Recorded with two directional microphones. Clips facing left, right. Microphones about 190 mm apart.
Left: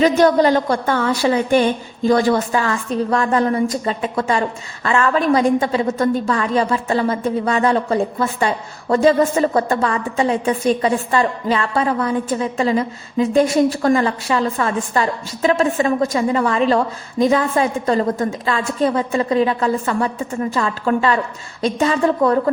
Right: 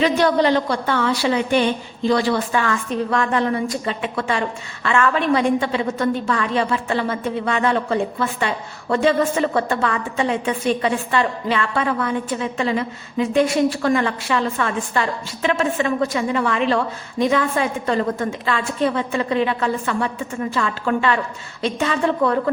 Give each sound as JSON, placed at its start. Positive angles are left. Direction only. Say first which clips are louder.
{"t": 0.0, "sound": "a woman's voice", "louder": "left 4 dB", "side_deg": 45}